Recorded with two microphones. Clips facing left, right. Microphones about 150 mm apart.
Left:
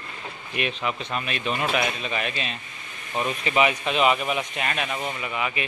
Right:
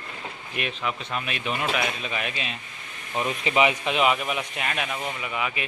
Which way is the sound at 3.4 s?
20° right (ahead or behind).